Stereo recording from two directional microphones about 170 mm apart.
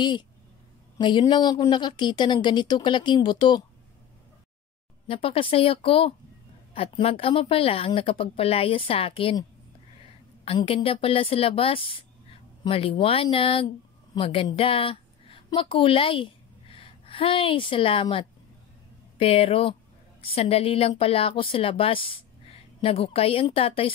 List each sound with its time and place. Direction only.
0.9 s a woman's voice: 25° left (ahead or behind)
5.0 s speech: 35° left (ahead or behind)
10.4 s a woman's voice: 35° left (ahead or behind)